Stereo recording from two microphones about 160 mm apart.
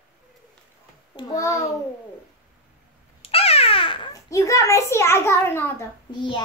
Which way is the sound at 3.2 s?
40° left (ahead or behind).